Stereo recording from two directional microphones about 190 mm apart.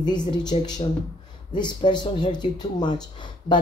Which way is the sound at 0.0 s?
20° left (ahead or behind).